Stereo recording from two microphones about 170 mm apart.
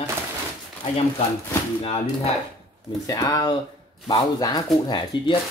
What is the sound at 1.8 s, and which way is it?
Speech, 35° left (ahead or behind).